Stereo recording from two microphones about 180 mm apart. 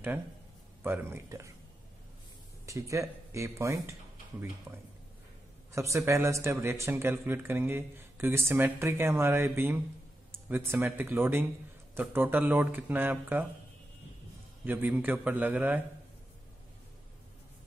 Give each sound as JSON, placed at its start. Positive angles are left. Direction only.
{"t": 0.8, "sound": "speech", "side_deg": -15}
{"t": 2.6, "sound": "speech", "side_deg": -15}
{"t": 14.6, "sound": "speech", "side_deg": -10}